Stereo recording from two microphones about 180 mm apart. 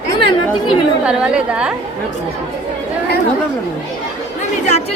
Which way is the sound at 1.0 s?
5° right (ahead or behind).